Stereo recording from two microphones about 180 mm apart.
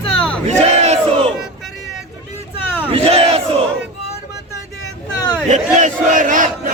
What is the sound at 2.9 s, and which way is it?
Battle cry, 35° right (ahead or behind).